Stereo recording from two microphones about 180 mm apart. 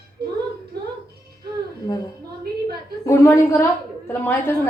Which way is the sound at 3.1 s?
15° left (ahead or behind).